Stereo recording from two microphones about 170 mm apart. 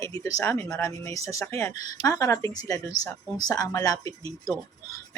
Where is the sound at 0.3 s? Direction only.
15° left (ahead or behind).